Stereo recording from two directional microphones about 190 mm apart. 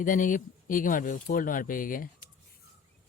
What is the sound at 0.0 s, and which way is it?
Speech, 45° left (ahead or behind).